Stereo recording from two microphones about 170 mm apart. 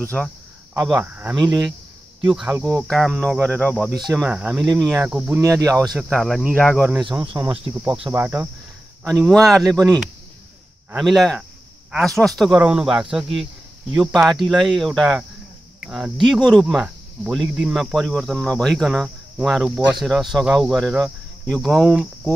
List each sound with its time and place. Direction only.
0.2 s speech: centre (ahead or behind)
1.3 s speech: 20° right (ahead or behind)
2.2 s speech: 5° right (ahead or behind)
4.2 s speech: 5° right (ahead or behind)
4.8 s speech: 15° right (ahead or behind)
5.1 s speech: 5° right (ahead or behind)
5.4 s speech: 20° right (ahead or behind)
5.9 s speech: centre (ahead or behind)
6.8 s speech: 10° right (ahead or behind)
7.3 s speech: 20° right (ahead or behind)
9.0 s speech: 5° left (ahead or behind)
11.0 s speech: centre (ahead or behind)